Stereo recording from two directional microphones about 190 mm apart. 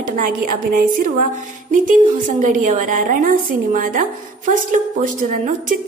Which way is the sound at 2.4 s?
40° right (ahead or behind).